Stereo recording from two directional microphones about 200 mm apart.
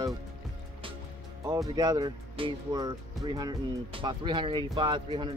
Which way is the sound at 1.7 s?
20° right (ahead or behind).